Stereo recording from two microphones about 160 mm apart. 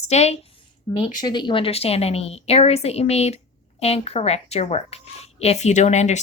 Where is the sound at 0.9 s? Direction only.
25° left (ahead or behind); by 6.2 s 45° left (ahead or behind).